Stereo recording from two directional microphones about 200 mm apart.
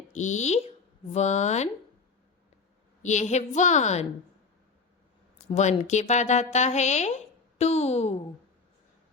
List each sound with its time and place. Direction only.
0.1 s a woman's voice: 35° left (ahead or behind)
3.0 s a woman's voice: 35° left (ahead or behind)
5.5 s a woman's voice: 35° left (ahead or behind)